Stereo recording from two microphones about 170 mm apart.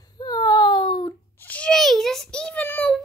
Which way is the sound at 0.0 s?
25° left (ahead or behind).